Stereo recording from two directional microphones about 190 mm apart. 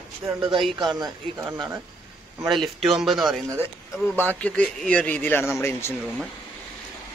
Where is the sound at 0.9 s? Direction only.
15° right (ahead or behind).